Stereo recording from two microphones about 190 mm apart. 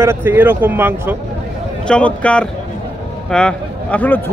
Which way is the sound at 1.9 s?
5° left (ahead or behind).